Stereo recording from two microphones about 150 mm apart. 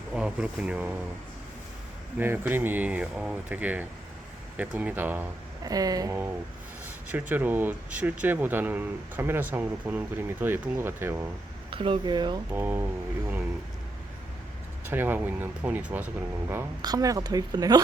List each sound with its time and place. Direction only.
0.1 s speech: 5° right (ahead or behind)
2.1 s speech: 15° right (ahead or behind)
5.6 s speech: 25° right (ahead or behind)
6.8 s speech: 10° right (ahead or behind)
11.7 s speech: 35° right (ahead or behind)
12.5 s speech: 15° right (ahead or behind)
14.8 s speech: 15° right (ahead or behind)
16.8 s speech: 25° right (ahead or behind)